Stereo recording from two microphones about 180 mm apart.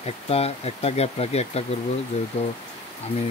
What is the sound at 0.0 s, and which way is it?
Speech, 35° left (ahead or behind).